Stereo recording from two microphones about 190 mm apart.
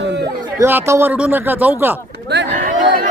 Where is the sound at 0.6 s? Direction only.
10° right (ahead or behind).